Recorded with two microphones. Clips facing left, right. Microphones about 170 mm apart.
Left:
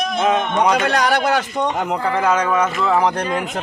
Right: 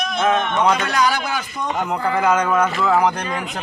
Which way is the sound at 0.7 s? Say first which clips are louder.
Left 2 dB; 65° left (ahead or behind).